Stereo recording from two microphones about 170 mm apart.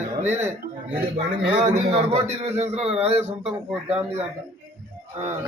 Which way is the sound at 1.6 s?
40° right (ahead or behind).